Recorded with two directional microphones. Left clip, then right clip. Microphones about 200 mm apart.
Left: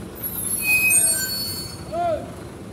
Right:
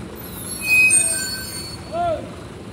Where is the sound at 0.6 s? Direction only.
50° right (ahead or behind).